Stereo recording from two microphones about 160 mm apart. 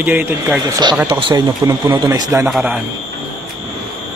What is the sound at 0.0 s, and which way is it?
A man's voice, 10° right (ahead or behind).